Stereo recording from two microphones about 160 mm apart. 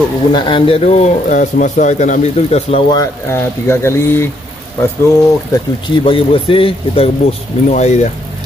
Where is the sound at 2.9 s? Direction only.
20° left (ahead or behind).